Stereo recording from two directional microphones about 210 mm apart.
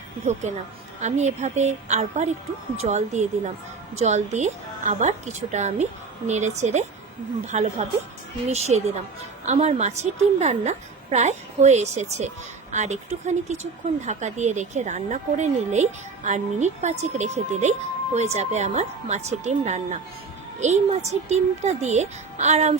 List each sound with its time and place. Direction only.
1.0 s speech: 35° right (ahead or behind)